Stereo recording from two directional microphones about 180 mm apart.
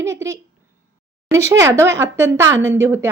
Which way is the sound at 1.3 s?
15° right (ahead or behind).